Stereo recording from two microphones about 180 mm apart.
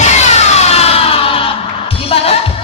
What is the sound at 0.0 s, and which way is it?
Music, 40° left (ahead or behind).